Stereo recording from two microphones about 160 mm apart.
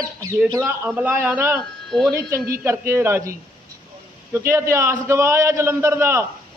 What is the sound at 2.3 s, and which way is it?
Speech, 65° right (ahead or behind).